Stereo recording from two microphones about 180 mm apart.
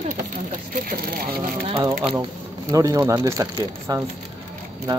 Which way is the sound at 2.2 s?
20° right (ahead or behind).